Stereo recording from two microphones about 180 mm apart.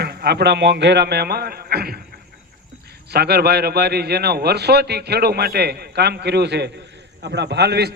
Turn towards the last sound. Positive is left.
turn(degrees=-65)  # may be behind; listen again after turning